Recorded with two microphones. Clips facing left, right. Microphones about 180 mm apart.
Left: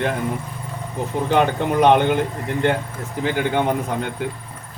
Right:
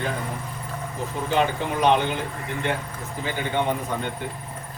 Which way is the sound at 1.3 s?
60° left (ahead or behind).